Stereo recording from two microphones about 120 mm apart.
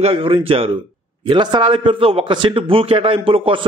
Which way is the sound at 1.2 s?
40° right (ahead or behind).